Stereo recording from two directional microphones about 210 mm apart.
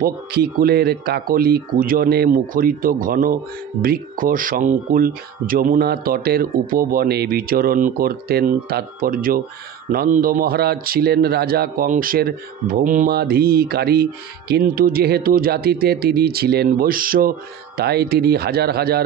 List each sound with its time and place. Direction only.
0.0 s speech: 45° right (ahead or behind)